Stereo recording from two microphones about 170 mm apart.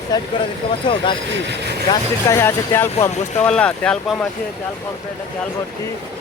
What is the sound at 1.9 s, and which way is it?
Speech, 15° left (ahead or behind).